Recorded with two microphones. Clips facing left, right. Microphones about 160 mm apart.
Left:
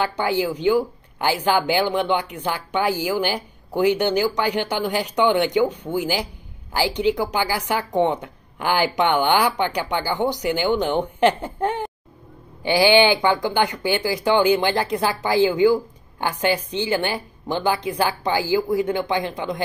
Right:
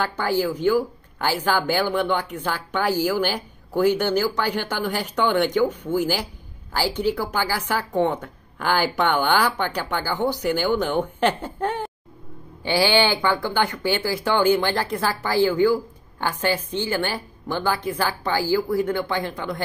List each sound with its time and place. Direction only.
0.0 s speech: 15° left (ahead or behind)